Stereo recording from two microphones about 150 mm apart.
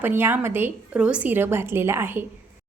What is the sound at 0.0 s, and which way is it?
A woman's voice, 15° right (ahead or behind).